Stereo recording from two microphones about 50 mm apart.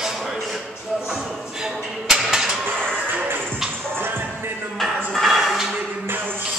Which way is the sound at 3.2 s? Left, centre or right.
Right.